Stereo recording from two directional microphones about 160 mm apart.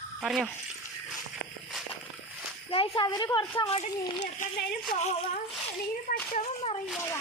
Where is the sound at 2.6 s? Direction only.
35° left (ahead or behind).